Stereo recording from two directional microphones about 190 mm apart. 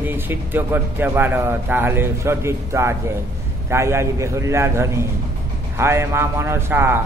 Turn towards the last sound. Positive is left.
turn(degrees=-15)  # may be behind; listen again after turning